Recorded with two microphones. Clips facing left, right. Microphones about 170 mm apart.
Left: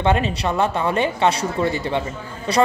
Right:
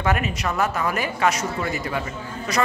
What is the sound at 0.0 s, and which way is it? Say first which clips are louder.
Speech: left 4 dB; 30° left (ahead or behind).